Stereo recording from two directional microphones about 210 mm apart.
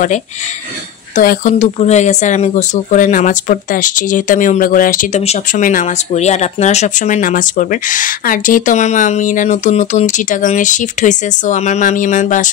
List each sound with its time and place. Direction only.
1.1 s speech: 40° left (ahead or behind)